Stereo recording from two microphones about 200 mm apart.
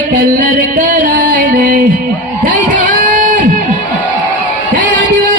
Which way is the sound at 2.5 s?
40° right (ahead or behind).